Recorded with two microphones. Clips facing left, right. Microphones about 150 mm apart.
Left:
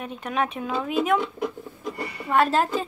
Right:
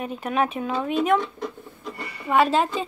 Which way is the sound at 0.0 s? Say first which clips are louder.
Right 3 dB; 5° right (ahead or behind).